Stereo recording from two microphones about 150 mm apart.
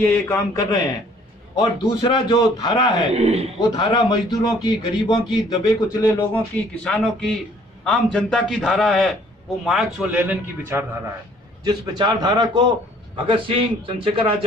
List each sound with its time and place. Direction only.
0.0 s a man's voice: 15° left (ahead or behind)
3.2 s a man's voice: 45° right (ahead or behind)
3.7 s a man's voice: 30° left (ahead or behind)
6.3 s a man's voice: 10° left (ahead or behind); by 10.9 s 10° right (ahead or behind)
11.6 s a man's voice: 30° right (ahead or behind)